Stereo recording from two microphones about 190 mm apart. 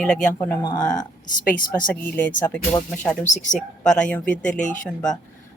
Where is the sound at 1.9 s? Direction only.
10° left (ahead or behind).